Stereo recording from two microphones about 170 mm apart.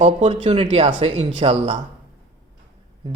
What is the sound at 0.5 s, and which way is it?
A man's voice, 40° right (ahead or behind).